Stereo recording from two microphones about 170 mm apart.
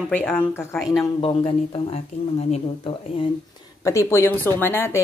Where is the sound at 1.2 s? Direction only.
30° left (ahead or behind).